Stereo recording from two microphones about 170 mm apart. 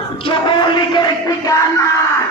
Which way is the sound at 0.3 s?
30° left (ahead or behind).